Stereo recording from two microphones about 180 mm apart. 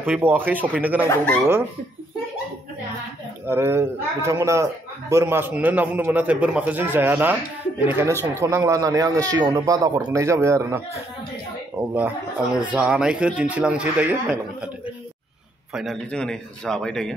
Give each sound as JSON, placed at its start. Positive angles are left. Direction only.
{"t": 0.0, "sound": "speech", "side_deg": -10}
{"t": 1.0, "sound": "speech", "side_deg": 10}
{"t": 3.4, "sound": "speech", "side_deg": -15}
{"t": 12.5, "sound": "speech", "side_deg": -5}
{"t": 15.7, "sound": "a man's voice", "side_deg": 0}